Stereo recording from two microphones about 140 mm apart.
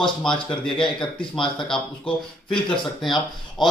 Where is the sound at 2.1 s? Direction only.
40° left (ahead or behind).